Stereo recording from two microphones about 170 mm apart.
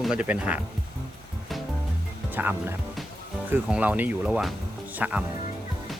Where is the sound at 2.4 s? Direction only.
10° right (ahead or behind).